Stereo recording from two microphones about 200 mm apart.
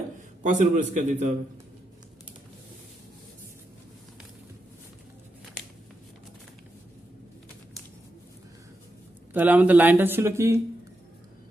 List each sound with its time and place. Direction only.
0.4 s a man's voice: 40° right (ahead or behind)
9.3 s speech: 10° right (ahead or behind)